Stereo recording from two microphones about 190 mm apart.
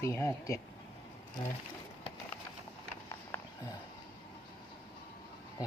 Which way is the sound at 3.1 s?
20° left (ahead or behind).